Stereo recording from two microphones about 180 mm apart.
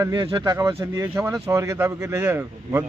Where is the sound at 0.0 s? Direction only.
25° right (ahead or behind).